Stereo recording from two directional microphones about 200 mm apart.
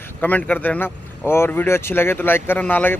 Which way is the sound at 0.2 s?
10° left (ahead or behind).